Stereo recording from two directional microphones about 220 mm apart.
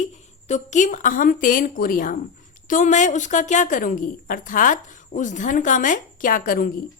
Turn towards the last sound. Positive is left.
turn(degrees=40)  # may be behind; listen again after turning